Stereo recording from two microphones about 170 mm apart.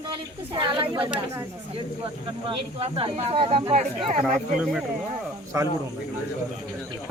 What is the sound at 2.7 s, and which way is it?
Speech, 35° right (ahead or behind).